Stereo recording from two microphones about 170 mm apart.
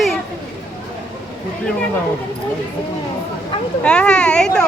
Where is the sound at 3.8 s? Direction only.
5° left (ahead or behind).